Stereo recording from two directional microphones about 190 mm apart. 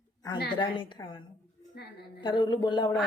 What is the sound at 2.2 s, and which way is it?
Speech, 25° left (ahead or behind).